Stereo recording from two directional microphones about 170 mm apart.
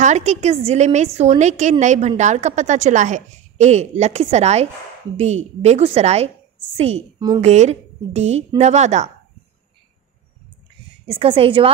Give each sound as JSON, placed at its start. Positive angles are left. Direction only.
{"t": 0.0, "sound": "a woman's voice", "side_deg": -45}
{"t": 7.3, "sound": "a woman's voice", "side_deg": -40}
{"t": 11.1, "sound": "a woman's voice", "side_deg": -30}